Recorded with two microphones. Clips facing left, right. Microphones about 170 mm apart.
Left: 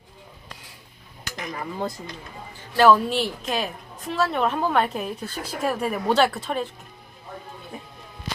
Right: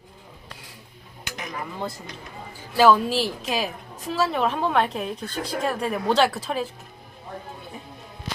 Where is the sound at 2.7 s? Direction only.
Centre (ahead or behind).